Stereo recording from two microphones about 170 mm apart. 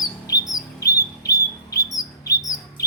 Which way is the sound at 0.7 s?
20° left (ahead or behind).